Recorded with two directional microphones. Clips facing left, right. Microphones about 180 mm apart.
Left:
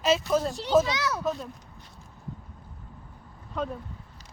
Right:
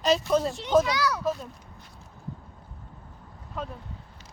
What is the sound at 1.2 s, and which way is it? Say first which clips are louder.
Speech: right 1 dB; centre (ahead or behind).